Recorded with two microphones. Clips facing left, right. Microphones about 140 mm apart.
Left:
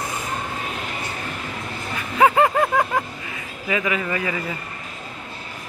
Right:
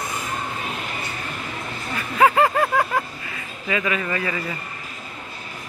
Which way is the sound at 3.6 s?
15° left (ahead or behind).